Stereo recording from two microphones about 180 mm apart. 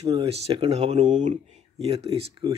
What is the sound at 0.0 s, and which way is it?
Speech, 20° right (ahead or behind).